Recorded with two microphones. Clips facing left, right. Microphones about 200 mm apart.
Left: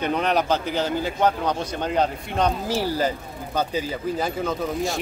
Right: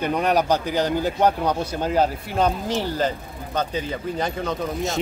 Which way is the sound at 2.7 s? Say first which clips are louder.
Even; 10° left (ahead or behind).